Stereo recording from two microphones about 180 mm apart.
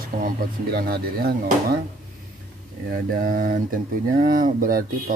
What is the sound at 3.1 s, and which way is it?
Speech, 50° right (ahead or behind).